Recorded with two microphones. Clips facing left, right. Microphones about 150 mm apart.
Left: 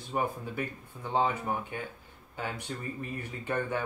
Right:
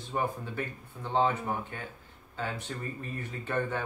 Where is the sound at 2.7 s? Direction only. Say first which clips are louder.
Left 1 dB; 15° left (ahead or behind).